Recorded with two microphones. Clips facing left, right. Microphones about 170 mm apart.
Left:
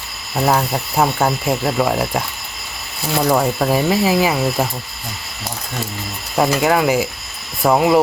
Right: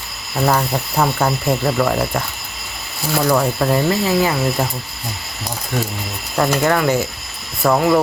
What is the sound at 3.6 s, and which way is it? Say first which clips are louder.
Speech: left 1 dB; 10° left (ahead or behind).